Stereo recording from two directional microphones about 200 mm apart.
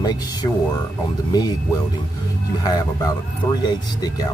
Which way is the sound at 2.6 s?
20° left (ahead or behind).